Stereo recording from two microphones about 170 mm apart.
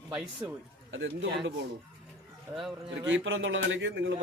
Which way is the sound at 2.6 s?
Centre (ahead or behind).